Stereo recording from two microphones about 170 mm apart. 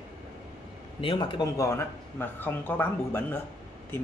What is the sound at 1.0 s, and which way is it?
Speech, 30° left (ahead or behind).